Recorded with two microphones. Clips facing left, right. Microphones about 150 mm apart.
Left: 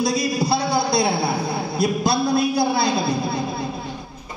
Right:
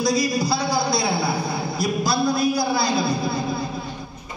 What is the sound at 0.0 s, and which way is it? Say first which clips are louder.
Speech: even; 60° left (ahead or behind).